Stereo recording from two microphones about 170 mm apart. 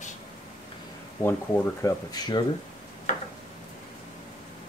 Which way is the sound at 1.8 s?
25° left (ahead or behind).